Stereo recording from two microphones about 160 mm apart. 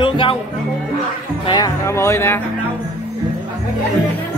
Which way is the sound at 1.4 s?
25° left (ahead or behind).